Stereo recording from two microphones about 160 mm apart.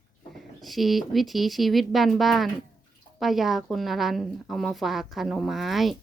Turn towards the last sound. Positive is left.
turn(degrees=0)  # may be behind; listen again after turning